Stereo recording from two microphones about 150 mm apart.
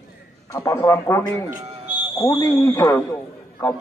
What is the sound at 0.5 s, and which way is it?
A man's voice, 20° left (ahead or behind).